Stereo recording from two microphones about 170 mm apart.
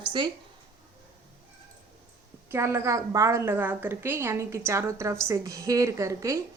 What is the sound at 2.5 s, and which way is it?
A woman's voice, 15° right (ahead or behind).